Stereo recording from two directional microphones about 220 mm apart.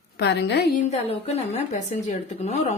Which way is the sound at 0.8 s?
30° left (ahead or behind).